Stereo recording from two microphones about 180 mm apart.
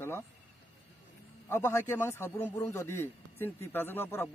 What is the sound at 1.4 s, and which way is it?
A man's voice, 15° left (ahead or behind).